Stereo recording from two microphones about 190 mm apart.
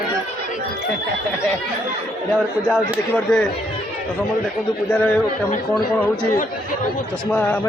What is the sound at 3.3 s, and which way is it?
Speech, 5° left (ahead or behind).